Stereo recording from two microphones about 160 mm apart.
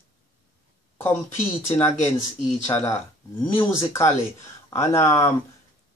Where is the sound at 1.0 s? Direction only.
15° left (ahead or behind).